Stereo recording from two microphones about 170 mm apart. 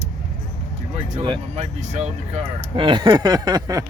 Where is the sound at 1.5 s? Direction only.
40° right (ahead or behind).